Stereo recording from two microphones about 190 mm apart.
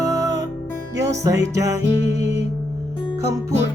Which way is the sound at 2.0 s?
65° right (ahead or behind).